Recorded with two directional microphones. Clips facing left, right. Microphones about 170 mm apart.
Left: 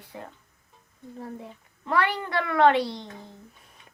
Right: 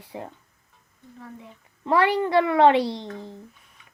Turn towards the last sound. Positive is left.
turn(degrees=-30)  # may be behind; listen again after turning